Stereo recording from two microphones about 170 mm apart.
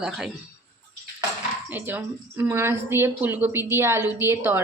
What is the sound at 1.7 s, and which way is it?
Speech, 10° right (ahead or behind).